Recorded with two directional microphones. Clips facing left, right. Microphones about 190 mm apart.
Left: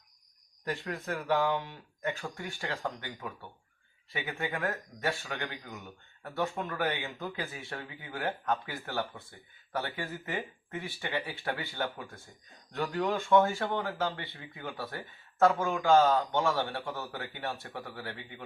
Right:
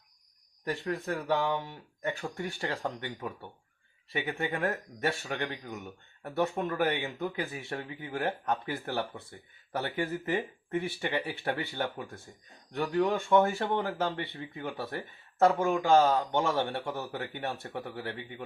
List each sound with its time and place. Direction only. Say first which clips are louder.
0.9 s speech: right 2 dB; 20° right (ahead or behind)